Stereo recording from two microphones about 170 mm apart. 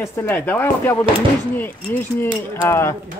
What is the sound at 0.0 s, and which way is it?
Speech, 15° left (ahead or behind).